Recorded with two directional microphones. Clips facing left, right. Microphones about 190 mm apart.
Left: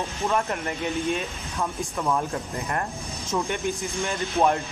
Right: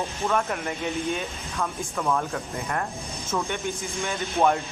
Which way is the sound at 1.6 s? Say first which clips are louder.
Left 1 dB; 15° left (ahead or behind).